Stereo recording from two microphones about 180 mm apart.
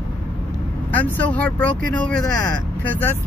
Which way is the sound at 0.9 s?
10° left (ahead or behind).